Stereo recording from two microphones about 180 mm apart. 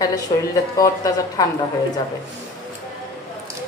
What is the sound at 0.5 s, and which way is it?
Speech, 20° left (ahead or behind).